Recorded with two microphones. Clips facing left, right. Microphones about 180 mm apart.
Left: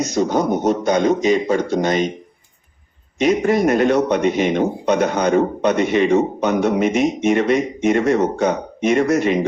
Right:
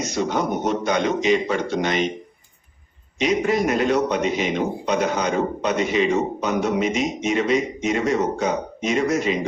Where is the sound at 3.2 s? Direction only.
50° left (ahead or behind).